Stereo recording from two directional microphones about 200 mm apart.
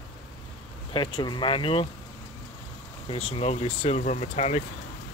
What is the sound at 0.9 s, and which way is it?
Speech, 20° left (ahead or behind).